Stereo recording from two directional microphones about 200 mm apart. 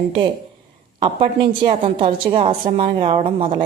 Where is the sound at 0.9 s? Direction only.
25° right (ahead or behind).